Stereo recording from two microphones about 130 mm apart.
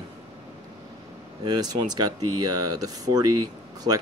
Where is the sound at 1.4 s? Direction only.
30° right (ahead or behind).